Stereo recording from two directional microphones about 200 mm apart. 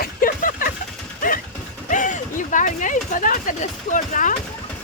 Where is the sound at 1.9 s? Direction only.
40° left (ahead or behind).